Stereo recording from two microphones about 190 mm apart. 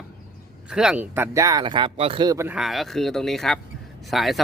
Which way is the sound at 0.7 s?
5° right (ahead or behind).